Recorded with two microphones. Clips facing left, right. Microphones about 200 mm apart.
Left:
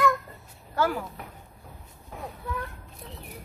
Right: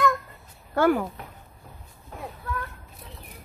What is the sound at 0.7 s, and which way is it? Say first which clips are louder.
Speech: right 6 dB; 55° right (ahead or behind).